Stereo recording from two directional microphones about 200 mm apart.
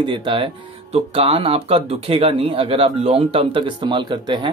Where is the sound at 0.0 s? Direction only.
25° right (ahead or behind).